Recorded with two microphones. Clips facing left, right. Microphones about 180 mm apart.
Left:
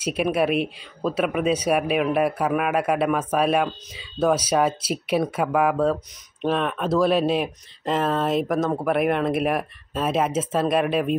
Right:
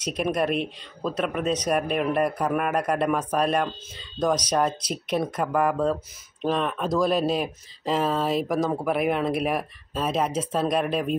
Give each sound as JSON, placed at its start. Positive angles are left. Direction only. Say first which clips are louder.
{"t": 0.0, "sound": "speech", "louder": "left 3 dB", "side_deg": 5}